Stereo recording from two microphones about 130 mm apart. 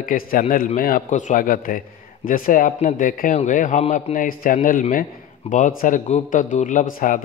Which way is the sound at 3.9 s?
90° left.